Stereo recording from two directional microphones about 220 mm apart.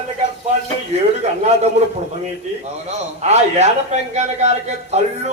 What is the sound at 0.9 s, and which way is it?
Speech, 30° right (ahead or behind).